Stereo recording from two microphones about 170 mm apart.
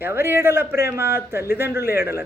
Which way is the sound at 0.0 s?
15° right (ahead or behind).